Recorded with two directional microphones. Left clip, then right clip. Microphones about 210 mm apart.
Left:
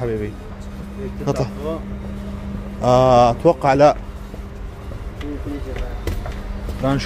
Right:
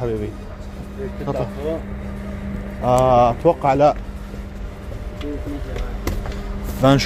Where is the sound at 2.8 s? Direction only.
20° left (ahead or behind).